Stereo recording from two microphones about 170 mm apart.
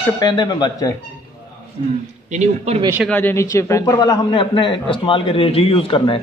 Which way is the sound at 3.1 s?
15° left (ahead or behind).